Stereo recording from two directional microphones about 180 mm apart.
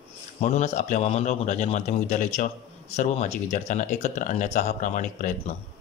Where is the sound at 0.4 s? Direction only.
40° left (ahead or behind).